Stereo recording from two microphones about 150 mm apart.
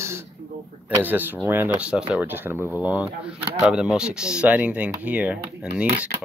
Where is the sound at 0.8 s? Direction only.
10° right (ahead or behind).